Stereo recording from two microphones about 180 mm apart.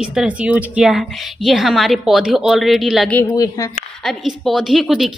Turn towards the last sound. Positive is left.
turn(degrees=0)  # may be behind; listen again after turning